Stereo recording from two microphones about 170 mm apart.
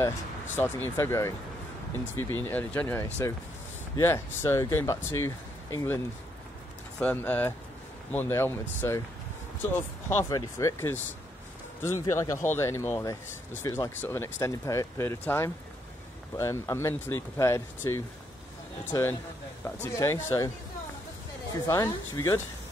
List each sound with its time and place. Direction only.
0.6 s speech: 10° left (ahead or behind)
7.0 s speech: 10° left (ahead or behind)
10.0 s speech: 15° left (ahead or behind)
21.6 s speech: 20° left (ahead or behind)